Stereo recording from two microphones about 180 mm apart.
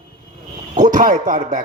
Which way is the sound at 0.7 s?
45° right (ahead or behind).